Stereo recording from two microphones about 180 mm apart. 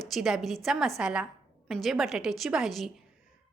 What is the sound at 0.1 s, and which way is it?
A woman's voice, centre (ahead or behind).